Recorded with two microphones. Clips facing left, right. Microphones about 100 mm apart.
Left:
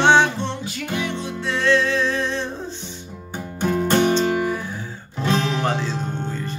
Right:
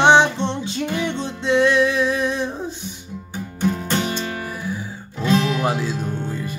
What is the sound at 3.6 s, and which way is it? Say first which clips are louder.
Music: left 3 dB; 50° left (ahead or behind).